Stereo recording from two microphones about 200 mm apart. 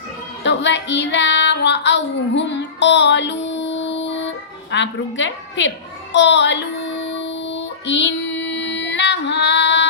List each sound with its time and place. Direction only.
0.4 s child singing: 60° left (ahead or behind)
4.7 s a woman's voice: 65° left (ahead or behind)
7.1 s child singing: 65° left (ahead or behind)